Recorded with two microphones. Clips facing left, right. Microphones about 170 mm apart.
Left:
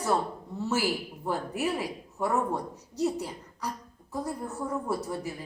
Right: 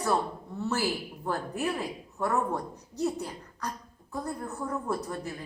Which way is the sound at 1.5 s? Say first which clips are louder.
Left 1 dB; 15° left (ahead or behind).